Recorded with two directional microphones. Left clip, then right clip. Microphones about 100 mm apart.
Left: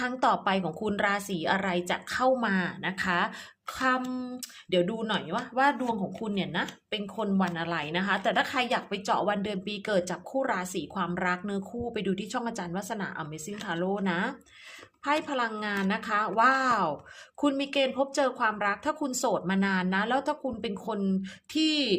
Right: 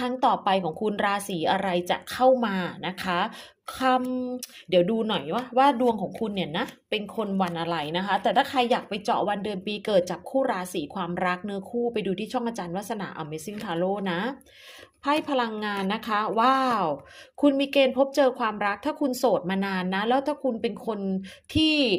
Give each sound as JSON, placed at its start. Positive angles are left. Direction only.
{"t": 0.1, "sound": "a woman's voice", "side_deg": -5}
{"t": 0.9, "sound": "speech", "side_deg": -20}
{"t": 4.1, "sound": "a woman's voice", "side_deg": -5}
{"t": 4.7, "sound": "a woman's voice", "side_deg": -30}